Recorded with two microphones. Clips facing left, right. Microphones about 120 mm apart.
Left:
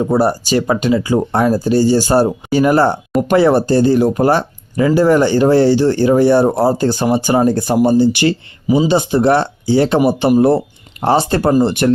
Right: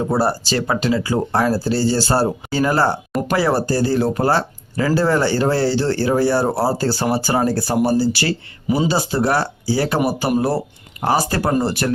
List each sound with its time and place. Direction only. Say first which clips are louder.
0.0 s speech: left 5 dB; 15° left (ahead or behind)